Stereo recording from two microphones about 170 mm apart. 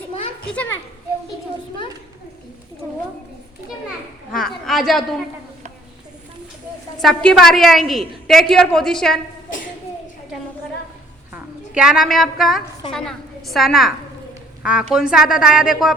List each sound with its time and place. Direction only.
0.5 s children playing: 10° left (ahead or behind)
2.8 s cat: 20° left (ahead or behind)
4.3 s a sound: centre (ahead or behind)
7.0 s a woman's voice: 5° left (ahead or behind)
11.3 s a woman's voice: 5° right (ahead or behind)